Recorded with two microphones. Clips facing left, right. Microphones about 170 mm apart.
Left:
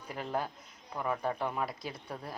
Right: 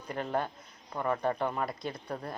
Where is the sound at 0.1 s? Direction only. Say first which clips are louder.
Right 3 dB; 5° left (ahead or behind).